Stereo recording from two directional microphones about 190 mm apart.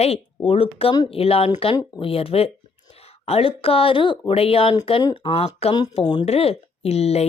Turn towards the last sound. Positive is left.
turn(degrees=35)  # may be behind; listen again after turning